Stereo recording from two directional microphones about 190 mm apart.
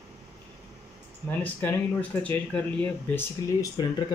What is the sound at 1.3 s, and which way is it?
Speech, 10° left (ahead or behind).